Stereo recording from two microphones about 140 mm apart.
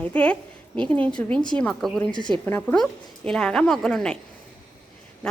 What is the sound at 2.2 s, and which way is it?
Speech, 35° right (ahead or behind).